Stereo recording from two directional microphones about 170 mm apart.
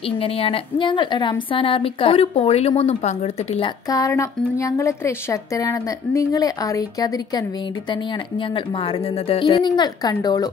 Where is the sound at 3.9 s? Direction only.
20° left (ahead or behind).